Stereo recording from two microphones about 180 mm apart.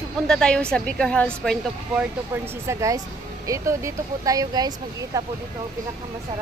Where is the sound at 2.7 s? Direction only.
15° right (ahead or behind).